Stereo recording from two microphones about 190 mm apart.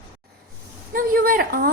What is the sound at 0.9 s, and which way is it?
Speech, 45° right (ahead or behind).